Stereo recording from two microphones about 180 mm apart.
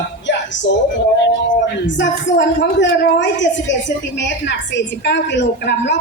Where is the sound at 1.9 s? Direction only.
90° left.